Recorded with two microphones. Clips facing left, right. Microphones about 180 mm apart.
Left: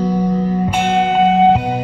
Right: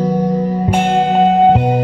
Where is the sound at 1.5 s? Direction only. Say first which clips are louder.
Right 4 dB; 50° right (ahead or behind).